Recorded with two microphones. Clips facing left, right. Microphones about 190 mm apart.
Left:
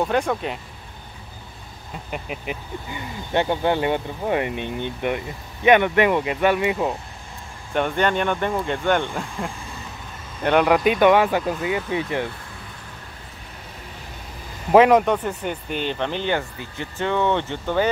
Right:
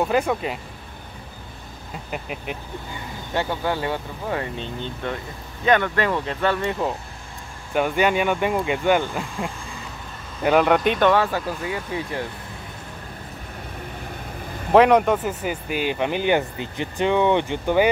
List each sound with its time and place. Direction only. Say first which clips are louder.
0.0 s speech: right 1 dB; 5° right (ahead or behind)
2.0 s speech: left 1 dB; centre (ahead or behind)
3.3 s speech: left 4 dB; 20° left (ahead or behind); by 7.0 s 5° left (ahead or behind)
7.7 s speech: right 1 dB; 5° right (ahead or behind); by 12.3 s 20° left (ahead or behind)
14.7 s speech: left 1 dB; centre (ahead or behind)